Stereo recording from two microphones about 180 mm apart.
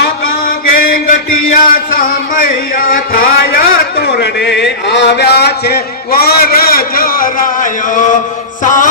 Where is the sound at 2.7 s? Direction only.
50° left (ahead or behind).